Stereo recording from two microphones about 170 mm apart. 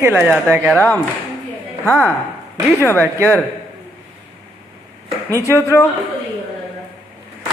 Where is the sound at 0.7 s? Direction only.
10° left (ahead or behind).